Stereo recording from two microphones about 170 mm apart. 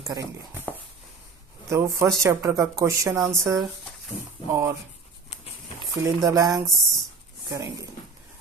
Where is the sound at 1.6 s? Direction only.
15° right (ahead or behind).